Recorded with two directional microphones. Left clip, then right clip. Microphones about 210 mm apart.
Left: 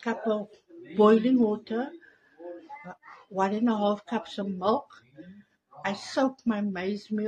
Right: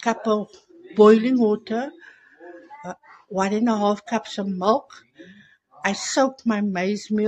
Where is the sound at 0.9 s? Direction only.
40° right (ahead or behind).